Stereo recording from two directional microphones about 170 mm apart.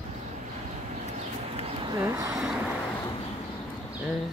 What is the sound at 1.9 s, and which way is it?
Speech, 20° right (ahead or behind).